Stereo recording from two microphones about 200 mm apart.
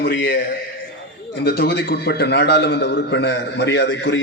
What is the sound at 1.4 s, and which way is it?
A man's voice, 55° left (ahead or behind).